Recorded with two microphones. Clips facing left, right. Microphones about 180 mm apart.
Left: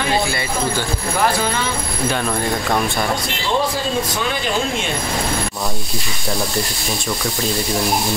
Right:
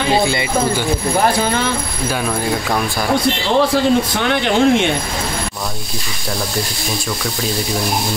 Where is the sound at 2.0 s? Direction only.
5° right (ahead or behind).